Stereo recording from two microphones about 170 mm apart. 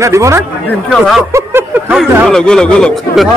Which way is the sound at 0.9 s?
Centre (ahead or behind).